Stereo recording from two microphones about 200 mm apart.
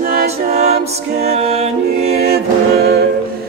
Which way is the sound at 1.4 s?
30° right (ahead or behind).